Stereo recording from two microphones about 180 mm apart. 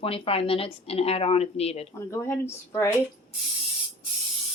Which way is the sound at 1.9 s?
15° left (ahead or behind).